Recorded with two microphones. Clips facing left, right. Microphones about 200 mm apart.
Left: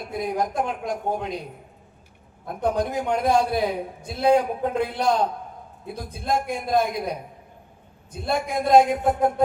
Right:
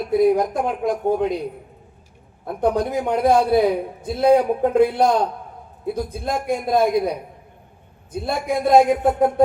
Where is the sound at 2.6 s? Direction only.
50° right (ahead or behind).